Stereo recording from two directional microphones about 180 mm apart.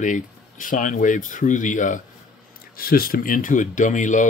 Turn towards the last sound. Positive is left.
turn(degrees=45)  # may be behind; listen again after turning